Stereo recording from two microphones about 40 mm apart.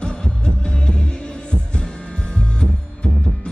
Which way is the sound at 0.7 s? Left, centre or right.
Left.